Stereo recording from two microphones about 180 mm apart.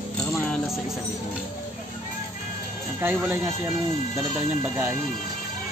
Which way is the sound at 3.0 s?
10° right (ahead or behind).